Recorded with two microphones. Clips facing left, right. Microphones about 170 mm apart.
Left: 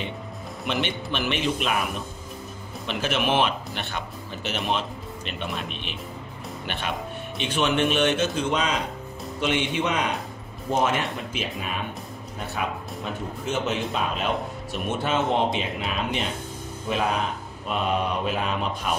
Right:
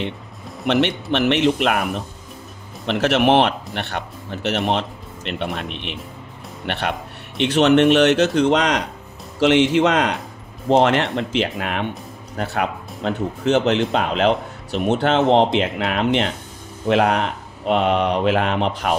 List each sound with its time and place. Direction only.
0.7 s speech: 70° right (ahead or behind)